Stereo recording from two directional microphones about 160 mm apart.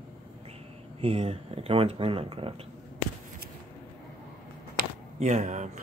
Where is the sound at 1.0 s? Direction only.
40° right (ahead or behind).